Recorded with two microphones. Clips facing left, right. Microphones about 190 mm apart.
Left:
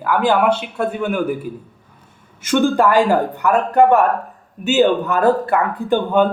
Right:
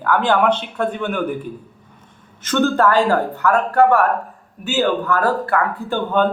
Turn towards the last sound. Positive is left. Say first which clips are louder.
# left 3 dB
turn(degrees=15)  # may be behind; listen again after turning